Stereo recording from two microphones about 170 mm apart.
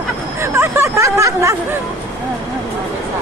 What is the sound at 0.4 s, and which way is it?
Hubbub, 15° right (ahead or behind).